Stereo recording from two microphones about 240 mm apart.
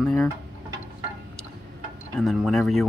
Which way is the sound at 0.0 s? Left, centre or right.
Centre.